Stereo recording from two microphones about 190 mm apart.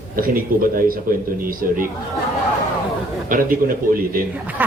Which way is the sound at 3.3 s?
45° right (ahead or behind).